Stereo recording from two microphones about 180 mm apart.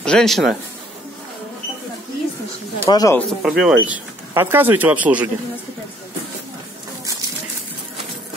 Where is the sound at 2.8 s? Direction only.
20° left (ahead or behind).